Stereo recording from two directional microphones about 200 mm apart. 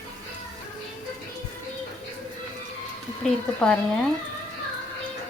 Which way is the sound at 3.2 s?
5° left (ahead or behind).